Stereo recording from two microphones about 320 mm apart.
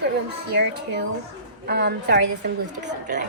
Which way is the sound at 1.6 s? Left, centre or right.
Right.